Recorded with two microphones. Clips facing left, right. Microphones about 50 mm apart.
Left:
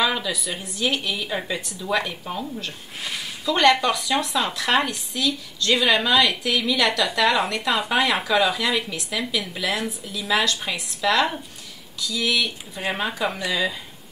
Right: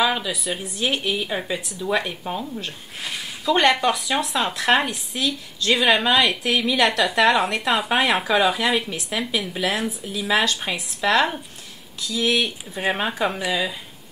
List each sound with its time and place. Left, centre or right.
0.0 s speech: centre
1.5 s a woman's voice: centre
3.4 s a woman's voice: right
7.7 s speech: centre
8.2 s a woman's voice: right
9.8 s speech: centre
10.4 s a woman's voice: right
13.4 s speech: centre